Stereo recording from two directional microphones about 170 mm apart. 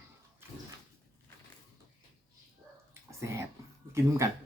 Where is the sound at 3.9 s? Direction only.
15° right (ahead or behind).